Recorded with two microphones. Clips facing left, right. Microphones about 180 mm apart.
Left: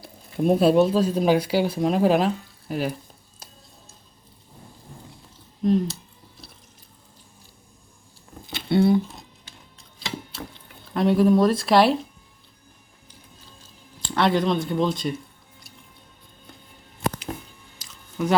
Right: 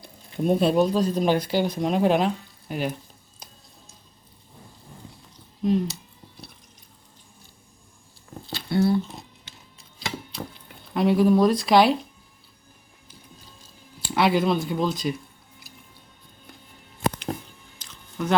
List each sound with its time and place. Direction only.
0.0 s speech: 5° left (ahead or behind)
5.6 s a sound: centre (ahead or behind)
8.4 s a sound: 25° left (ahead or behind)
10.9 s speech: centre (ahead or behind)
14.0 s speech: 5° right (ahead or behind)
15.6 s music: centre (ahead or behind)
17.7 s chewing: 5° left (ahead or behind)